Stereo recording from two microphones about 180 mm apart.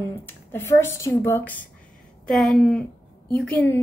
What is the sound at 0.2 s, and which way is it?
Speech, 10° left (ahead or behind).